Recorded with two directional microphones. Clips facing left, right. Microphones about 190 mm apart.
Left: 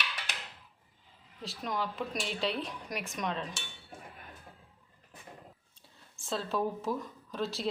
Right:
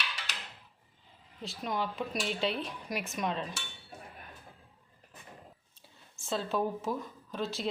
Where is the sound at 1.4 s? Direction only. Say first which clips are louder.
Right 1 dB; centre (ahead or behind).